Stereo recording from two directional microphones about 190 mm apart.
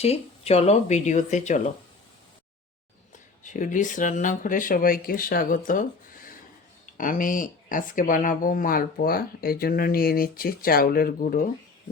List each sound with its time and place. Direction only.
0.0 s speech: 35° left (ahead or behind)
3.4 s speech: 40° left (ahead or behind)
6.9 s speech: 45° left (ahead or behind)